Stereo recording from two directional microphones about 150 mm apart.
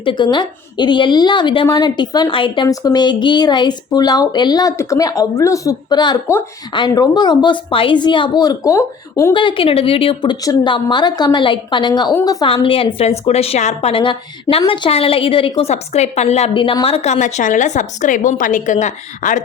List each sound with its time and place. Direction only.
0.0 s a woman's voice: 30° left (ahead or behind)
9.3 s a woman's voice: 35° left (ahead or behind)
12.5 s a woman's voice: 35° left (ahead or behind); by 19.4 s 55° left (ahead or behind)